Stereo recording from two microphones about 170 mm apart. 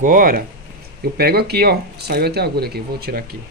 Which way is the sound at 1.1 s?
70° right (ahead or behind).